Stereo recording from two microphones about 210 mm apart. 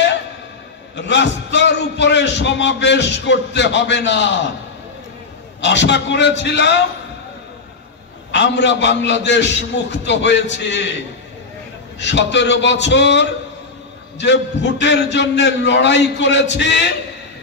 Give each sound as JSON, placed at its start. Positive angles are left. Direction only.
{"t": 0.9, "sound": "a man's voice", "side_deg": 55}
{"t": 5.6, "sound": "a man's voice", "side_deg": 55}
{"t": 8.3, "sound": "a man's voice", "side_deg": 55}
{"t": 12.0, "sound": "a man's voice", "side_deg": 55}